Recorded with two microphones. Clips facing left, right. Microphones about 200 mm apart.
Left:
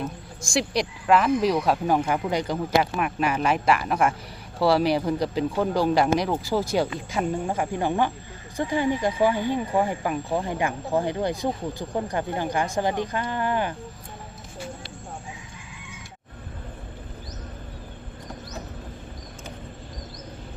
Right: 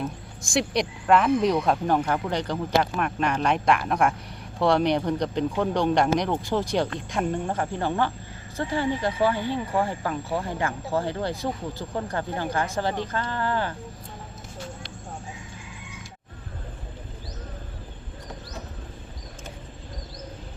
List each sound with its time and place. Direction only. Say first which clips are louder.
0.0 s speech: even; centre (ahead or behind); by 13.7 s 15° left (ahead or behind)